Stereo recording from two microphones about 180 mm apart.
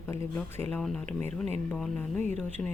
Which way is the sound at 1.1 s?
35° right (ahead or behind).